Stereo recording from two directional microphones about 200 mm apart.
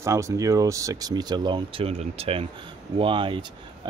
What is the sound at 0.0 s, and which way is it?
Speech, 15° right (ahead or behind).